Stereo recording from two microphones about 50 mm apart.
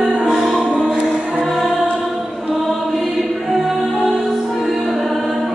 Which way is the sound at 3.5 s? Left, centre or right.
Centre.